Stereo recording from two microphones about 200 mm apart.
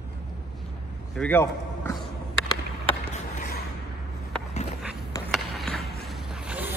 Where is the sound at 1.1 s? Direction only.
10° left (ahead or behind).